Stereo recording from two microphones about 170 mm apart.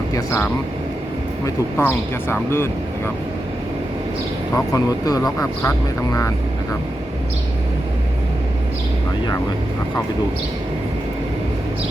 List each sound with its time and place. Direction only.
0.1 s speech: 15° left (ahead or behind)
4.5 s speech: 20° left (ahead or behind)